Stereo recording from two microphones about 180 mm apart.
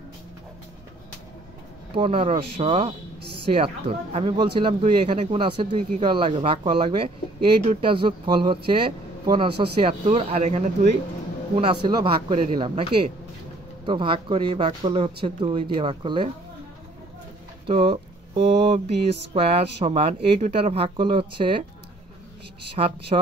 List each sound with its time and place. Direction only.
2.0 s speech: 35° right (ahead or behind)
11.5 s speech: 30° right (ahead or behind)
13.8 s speech: 30° right (ahead or behind)
17.6 s speech: 30° right (ahead or behind)
22.8 s speech: 30° right (ahead or behind)